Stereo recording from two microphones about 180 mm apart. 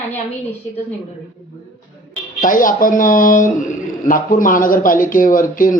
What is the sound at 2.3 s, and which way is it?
A man's voice, 50° left (ahead or behind).